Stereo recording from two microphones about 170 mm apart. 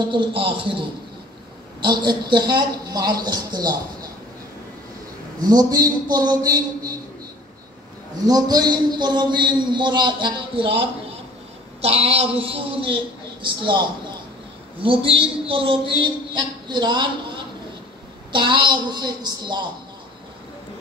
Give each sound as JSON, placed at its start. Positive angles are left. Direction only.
{"t": 0.1, "sound": "a man's voice", "side_deg": -30}
{"t": 5.4, "sound": "a man's voice", "side_deg": -20}
{"t": 8.3, "sound": "a man's voice", "side_deg": -20}
{"t": 18.3, "sound": "a man's voice", "side_deg": -30}